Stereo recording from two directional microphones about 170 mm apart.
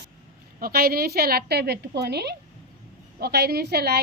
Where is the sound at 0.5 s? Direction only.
60° right (ahead or behind).